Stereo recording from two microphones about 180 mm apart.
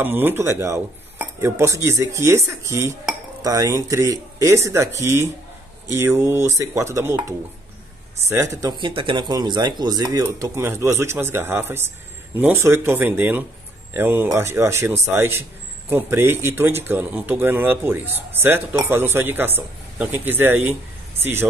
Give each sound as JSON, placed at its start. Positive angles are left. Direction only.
{"t": 0.0, "sound": "a man's voice", "side_deg": -10}